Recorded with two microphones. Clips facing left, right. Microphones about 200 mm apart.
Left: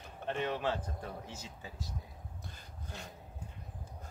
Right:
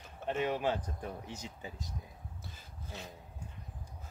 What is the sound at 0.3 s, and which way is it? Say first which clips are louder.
Speech: right 2 dB; 10° right (ahead or behind).